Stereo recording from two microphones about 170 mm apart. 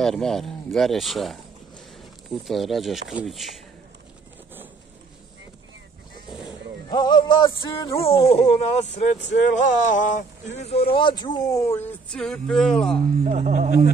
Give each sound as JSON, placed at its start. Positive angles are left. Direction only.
{"t": 0.0, "sound": "speech", "side_deg": 0}
{"t": 6.9, "sound": "speech", "side_deg": 25}
{"t": 12.1, "sound": "speech", "side_deg": 5}
{"t": 13.2, "sound": "speech", "side_deg": -45}